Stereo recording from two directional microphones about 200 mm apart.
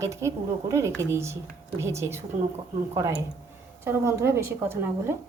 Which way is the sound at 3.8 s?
15° right (ahead or behind).